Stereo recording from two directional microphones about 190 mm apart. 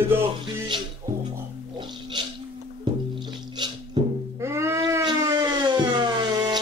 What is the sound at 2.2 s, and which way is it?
Music, 25° right (ahead or behind).